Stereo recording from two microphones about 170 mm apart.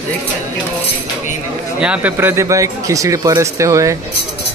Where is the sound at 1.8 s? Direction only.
10° right (ahead or behind).